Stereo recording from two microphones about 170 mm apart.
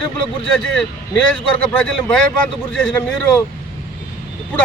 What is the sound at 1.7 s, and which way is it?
A man's voice, 10° left (ahead or behind).